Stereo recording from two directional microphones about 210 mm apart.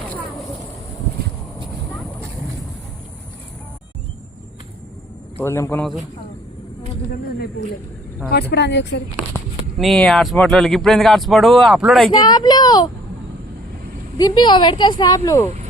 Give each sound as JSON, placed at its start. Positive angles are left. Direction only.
{"t": 5.4, "sound": "a man's voice", "side_deg": 10}
{"t": 8.3, "sound": "speech", "side_deg": 50}
{"t": 9.3, "sound": "speech", "side_deg": 0}
{"t": 12.1, "sound": "a woman's voice", "side_deg": 20}
{"t": 14.2, "sound": "a woman's voice", "side_deg": 20}